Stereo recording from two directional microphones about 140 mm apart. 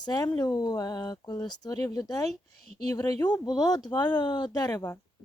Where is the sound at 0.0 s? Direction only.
30° left (ahead or behind).